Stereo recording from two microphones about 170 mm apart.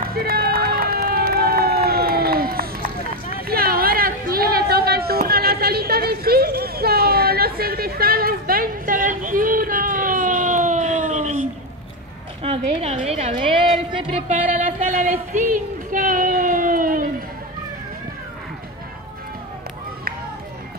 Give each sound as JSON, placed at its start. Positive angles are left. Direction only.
{"t": 0.0, "sound": "run", "side_deg": -60}
{"t": 3.4, "sound": "chatter", "side_deg": -60}
{"t": 12.4, "sound": "a woman's voice", "side_deg": -35}
{"t": 14.8, "sound": "a sound", "side_deg": -45}